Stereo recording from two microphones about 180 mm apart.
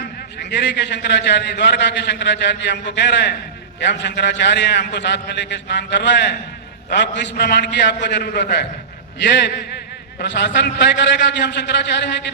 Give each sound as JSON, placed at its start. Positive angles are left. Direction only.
{"t": 0.5, "sound": "a man's voice", "side_deg": 75}